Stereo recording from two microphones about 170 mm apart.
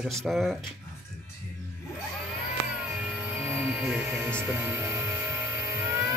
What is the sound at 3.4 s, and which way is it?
Music, 10° right (ahead or behind).